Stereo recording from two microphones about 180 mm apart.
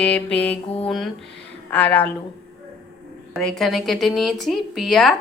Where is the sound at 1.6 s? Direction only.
10° left (ahead or behind).